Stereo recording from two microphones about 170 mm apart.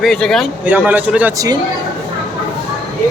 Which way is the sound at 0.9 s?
10° right (ahead or behind).